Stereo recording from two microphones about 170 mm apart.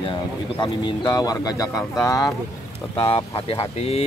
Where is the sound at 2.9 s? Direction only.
35° left (ahead or behind).